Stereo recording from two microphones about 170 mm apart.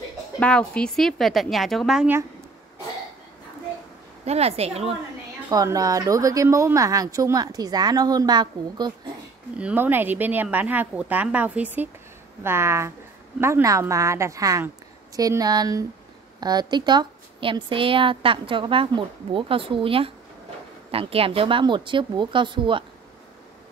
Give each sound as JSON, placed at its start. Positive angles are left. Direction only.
{"t": 0.4, "sound": "a woman's voice", "side_deg": 5}
{"t": 4.3, "sound": "a woman's voice", "side_deg": -40}
{"t": 5.5, "sound": "speech", "side_deg": -20}
{"t": 9.6, "sound": "a woman's voice", "side_deg": -10}